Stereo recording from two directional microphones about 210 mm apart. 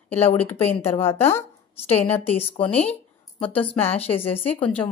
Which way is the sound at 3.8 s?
30° left (ahead or behind).